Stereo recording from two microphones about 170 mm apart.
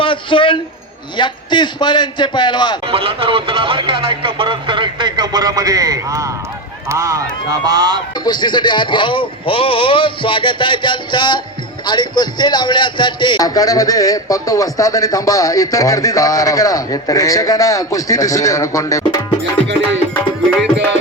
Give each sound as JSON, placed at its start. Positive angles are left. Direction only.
{"t": 0.0, "sound": "a man's voice", "side_deg": 30}
{"t": 2.8, "sound": "speech", "side_deg": -30}
{"t": 8.2, "sound": "a man's voice", "side_deg": 25}